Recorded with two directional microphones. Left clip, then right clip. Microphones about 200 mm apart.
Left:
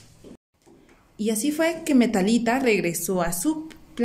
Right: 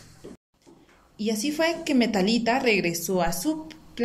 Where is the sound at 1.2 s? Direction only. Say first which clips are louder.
Left 2 dB; 30° left (ahead or behind).